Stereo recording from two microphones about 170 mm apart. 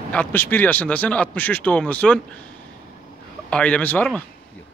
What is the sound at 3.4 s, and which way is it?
Speech, 5° left (ahead or behind).